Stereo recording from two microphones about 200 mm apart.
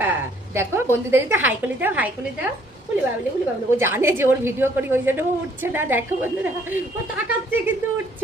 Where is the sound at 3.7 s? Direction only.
10° right (ahead or behind).